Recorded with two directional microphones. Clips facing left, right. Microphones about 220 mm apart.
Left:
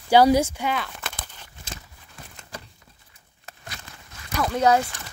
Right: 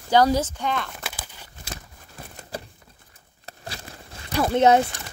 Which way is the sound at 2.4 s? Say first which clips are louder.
Right 7 dB; 35° right (ahead or behind).